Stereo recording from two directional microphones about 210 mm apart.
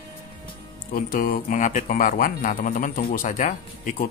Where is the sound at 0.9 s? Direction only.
40° left (ahead or behind).